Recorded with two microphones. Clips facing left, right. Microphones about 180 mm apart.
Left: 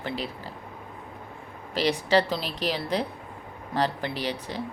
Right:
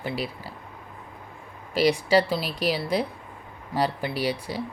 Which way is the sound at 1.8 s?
10° right (ahead or behind).